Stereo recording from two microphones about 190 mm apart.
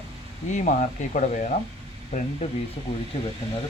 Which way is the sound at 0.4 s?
40° left (ahead or behind).